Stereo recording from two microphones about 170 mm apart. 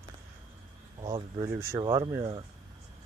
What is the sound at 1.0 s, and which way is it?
Speech, 25° right (ahead or behind).